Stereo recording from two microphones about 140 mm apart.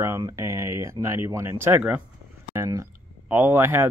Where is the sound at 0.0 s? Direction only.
20° right (ahead or behind).